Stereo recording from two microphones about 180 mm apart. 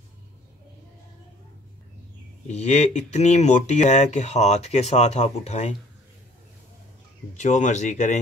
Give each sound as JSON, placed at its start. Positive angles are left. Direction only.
{"t": 2.4, "sound": "speech", "side_deg": 40}
{"t": 7.3, "sound": "speech", "side_deg": 40}